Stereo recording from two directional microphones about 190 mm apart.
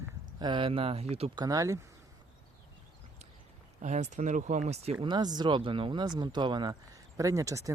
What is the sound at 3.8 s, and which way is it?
Speech, 35° right (ahead or behind).